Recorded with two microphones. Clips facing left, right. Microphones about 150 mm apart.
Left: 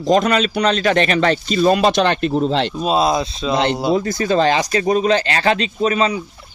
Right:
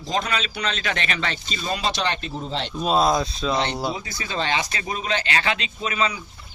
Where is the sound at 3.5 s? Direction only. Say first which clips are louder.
Left 7 dB; 25° left (ahead or behind).